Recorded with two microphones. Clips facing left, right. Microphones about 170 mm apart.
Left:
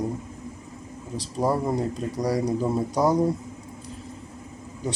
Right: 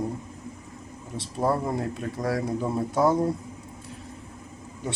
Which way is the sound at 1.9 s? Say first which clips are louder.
Left 3 dB; centre (ahead or behind).